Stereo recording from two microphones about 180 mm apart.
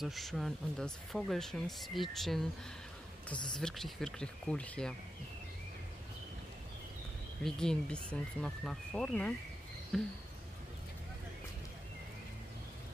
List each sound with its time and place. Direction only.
0.0 s speech: centre (ahead or behind)
3.4 s speech: 5° left (ahead or behind)
7.4 s speech: 5° left (ahead or behind)